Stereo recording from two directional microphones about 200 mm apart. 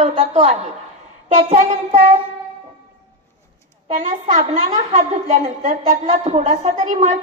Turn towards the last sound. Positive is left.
turn(degrees=-35)  # may be behind; listen again after turning